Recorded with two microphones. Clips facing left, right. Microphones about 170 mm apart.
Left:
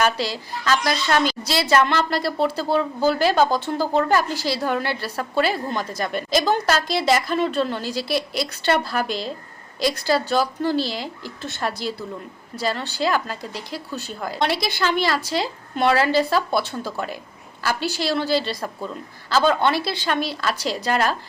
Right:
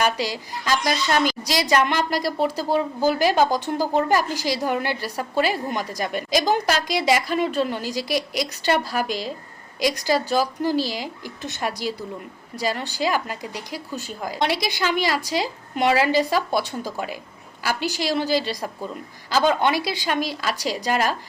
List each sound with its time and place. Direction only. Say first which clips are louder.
0.0 s speech: left 1 dB; 10° right (ahead or behind)